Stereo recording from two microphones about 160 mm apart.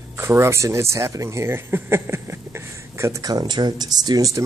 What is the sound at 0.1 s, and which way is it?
Speech, 15° right (ahead or behind).